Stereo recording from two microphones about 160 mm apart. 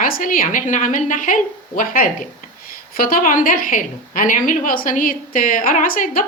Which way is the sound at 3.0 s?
60° left (ahead or behind).